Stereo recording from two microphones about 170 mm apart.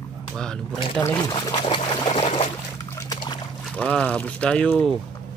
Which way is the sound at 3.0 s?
25° left (ahead or behind).